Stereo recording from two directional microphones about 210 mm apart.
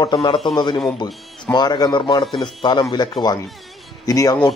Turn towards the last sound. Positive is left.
turn(degrees=15)  # may be behind; listen again after turning